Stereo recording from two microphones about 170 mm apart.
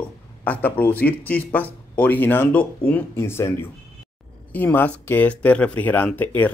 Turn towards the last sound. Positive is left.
turn(degrees=10)  # may be behind; listen again after turning